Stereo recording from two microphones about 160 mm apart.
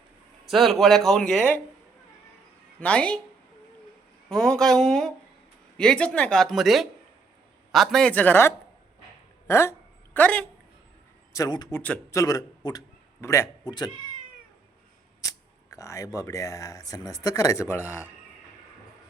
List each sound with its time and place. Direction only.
0.4 s a man's voice: centre (ahead or behind)
2.8 s speech: 5° left (ahead or behind)
4.3 s a man's voice: 5° left (ahead or behind)
11.3 s a man's voice: 25° left (ahead or behind)
11.7 s a man's voice: 15° left (ahead or behind)
15.2 s speech: 20° left (ahead or behind)